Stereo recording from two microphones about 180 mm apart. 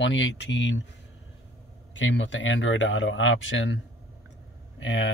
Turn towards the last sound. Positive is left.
turn(degrees=90)